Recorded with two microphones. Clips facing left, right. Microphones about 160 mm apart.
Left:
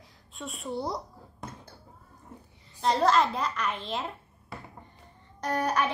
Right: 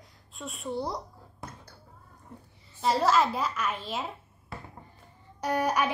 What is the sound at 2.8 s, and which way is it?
A child's voice, 5° right (ahead or behind).